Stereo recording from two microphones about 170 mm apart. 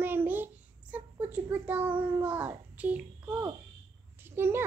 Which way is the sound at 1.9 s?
30° right (ahead or behind).